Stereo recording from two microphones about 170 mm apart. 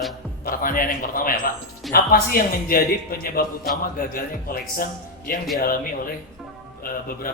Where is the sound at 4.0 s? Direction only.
60° left (ahead or behind).